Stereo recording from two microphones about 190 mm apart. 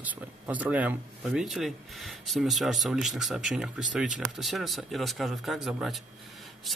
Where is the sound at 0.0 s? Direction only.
10° right (ahead or behind).